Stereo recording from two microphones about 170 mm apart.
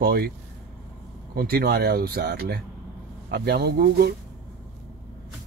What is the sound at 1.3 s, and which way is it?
Speech, 65° right (ahead or behind).